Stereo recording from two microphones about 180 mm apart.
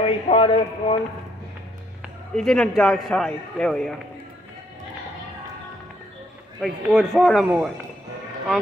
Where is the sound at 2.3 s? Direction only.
5° left (ahead or behind).